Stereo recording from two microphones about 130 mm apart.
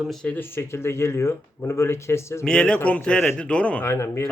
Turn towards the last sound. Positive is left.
turn(degrees=20)  # may be behind; listen again after turning